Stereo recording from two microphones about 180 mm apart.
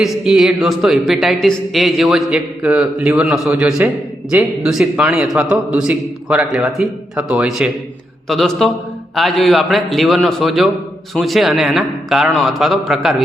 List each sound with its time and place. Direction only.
0.0 s speech: centre (ahead or behind)